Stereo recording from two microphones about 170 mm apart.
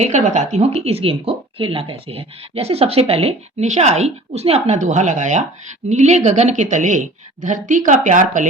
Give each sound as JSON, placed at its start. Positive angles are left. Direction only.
{"t": 0.0, "sound": "a woman's voice", "side_deg": -45}